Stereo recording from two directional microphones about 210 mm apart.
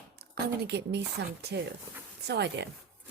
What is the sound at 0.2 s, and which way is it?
Speech, 50° right (ahead or behind).